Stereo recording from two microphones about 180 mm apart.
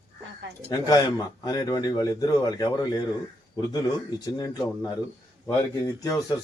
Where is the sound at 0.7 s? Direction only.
20° left (ahead or behind).